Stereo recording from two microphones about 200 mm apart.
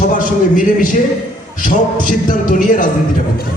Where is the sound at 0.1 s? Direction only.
40° left (ahead or behind).